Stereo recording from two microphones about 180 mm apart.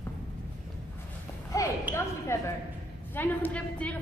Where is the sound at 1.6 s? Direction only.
20° left (ahead or behind).